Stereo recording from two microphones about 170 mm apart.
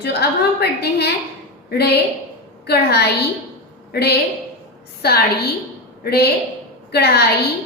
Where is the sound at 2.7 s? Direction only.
70° left (ahead or behind).